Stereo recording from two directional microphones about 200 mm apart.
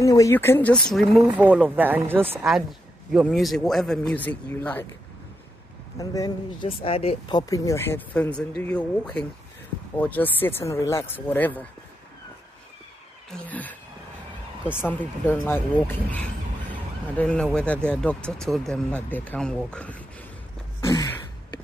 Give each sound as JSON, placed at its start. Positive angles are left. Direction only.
{"t": 0.0, "sound": "a man's voice", "side_deg": 15}
{"t": 5.9, "sound": "speech", "side_deg": 20}
{"t": 13.3, "sound": "speech", "side_deg": 10}
{"t": 14.8, "sound": "a man's voice", "side_deg": 10}
{"t": 20.8, "sound": "a sound", "side_deg": 20}